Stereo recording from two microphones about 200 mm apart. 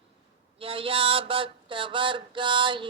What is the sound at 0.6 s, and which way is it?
Mantra, 25° right (ahead or behind).